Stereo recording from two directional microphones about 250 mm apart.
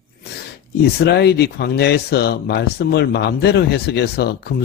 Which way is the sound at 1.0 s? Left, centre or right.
Left.